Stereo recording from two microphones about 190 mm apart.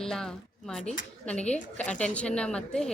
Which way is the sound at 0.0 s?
Centre (ahead or behind).